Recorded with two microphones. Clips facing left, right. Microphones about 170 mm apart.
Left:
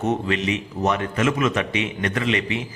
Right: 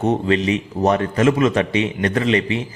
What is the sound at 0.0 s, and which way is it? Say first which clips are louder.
A man's voice: right 5 dB; 35° right (ahead or behind).